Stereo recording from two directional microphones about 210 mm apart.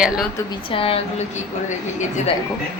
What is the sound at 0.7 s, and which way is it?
Speech, 25° left (ahead or behind).